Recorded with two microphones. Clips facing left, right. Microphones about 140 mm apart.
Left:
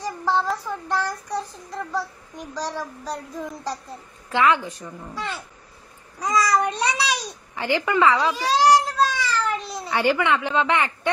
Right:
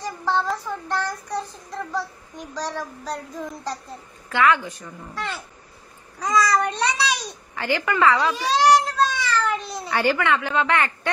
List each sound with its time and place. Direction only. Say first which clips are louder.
0.0 s child singing: left 1 dB; 5° left (ahead or behind)
2.5 s child singing: even; 10° left (ahead or behind)
4.3 s a woman's voice: even; 25° left (ahead or behind)
4.8 s child singing: even; 5° left (ahead or behind)
7.5 s a woman's voice: left 2 dB; 20° left (ahead or behind)
8.2 s a child's voice: even; 5° left (ahead or behind)
10.0 s a woman's voice: left 1 dB; 15° left (ahead or behind)